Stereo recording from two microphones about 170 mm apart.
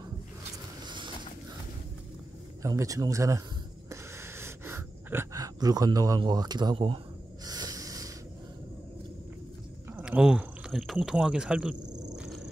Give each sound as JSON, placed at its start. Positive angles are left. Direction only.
{"t": 0.8, "sound": "mechanisms", "side_deg": -25}
{"t": 2.6, "sound": "speech", "side_deg": -20}
{"t": 3.9, "sound": "a sound", "side_deg": -15}
{"t": 7.4, "sound": "snort", "side_deg": -20}
{"t": 9.9, "sound": "speech", "side_deg": -5}